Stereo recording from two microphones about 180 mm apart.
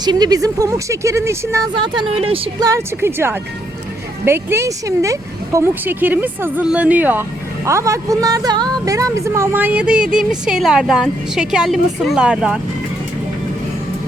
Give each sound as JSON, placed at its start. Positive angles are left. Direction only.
{"t": 0.0, "sound": "speech", "side_deg": -20}
{"t": 1.7, "sound": "speech", "side_deg": -25}
{"t": 2.6, "sound": "speech", "side_deg": -15}